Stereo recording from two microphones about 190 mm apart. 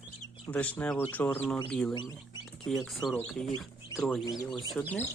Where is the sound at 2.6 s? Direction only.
Centre (ahead or behind).